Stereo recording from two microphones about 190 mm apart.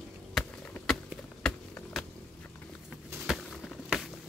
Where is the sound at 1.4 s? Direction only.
Centre (ahead or behind).